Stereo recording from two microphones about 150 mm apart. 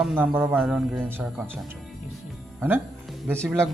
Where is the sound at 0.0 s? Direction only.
10° right (ahead or behind).